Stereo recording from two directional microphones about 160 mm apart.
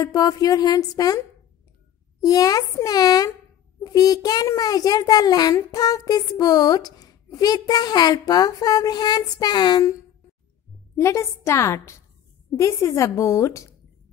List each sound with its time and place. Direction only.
0.0 s a child's voice: 25° left (ahead or behind)
2.2 s a child's voice: 20° left (ahead or behind)
11.0 s a woman's voice: 15° left (ahead or behind)